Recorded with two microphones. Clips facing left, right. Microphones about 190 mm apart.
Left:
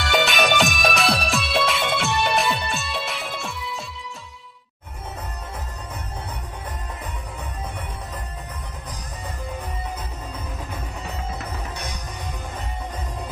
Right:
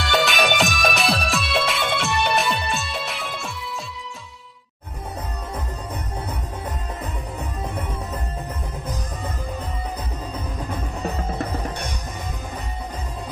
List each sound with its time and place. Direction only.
0.0 s music: centre (ahead or behind)
11.0 s music: 40° right (ahead or behind)